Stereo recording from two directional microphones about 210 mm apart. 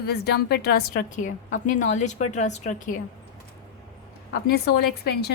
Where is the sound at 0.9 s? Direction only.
35° left (ahead or behind).